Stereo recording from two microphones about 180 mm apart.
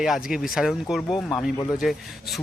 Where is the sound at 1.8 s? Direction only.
Centre (ahead or behind).